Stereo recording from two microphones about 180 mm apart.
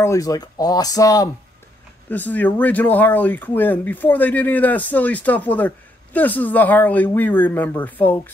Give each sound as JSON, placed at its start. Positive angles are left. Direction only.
{"t": 0.0, "sound": "speech", "side_deg": 20}
{"t": 2.0, "sound": "speech", "side_deg": 10}